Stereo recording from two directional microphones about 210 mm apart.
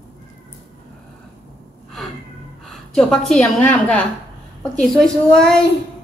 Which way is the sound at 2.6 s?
Centre (ahead or behind).